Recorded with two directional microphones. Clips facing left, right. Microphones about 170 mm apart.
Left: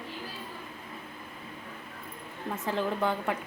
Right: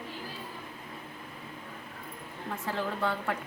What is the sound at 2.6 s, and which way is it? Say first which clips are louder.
Speech: left 3 dB; 20° left (ahead or behind).